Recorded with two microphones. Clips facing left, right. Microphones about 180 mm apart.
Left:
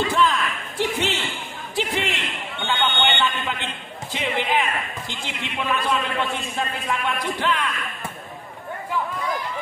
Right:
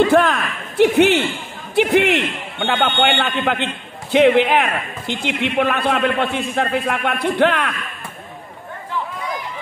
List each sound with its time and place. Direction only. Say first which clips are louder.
0.0 s a man's voice: right 7 dB; 60° right (ahead or behind)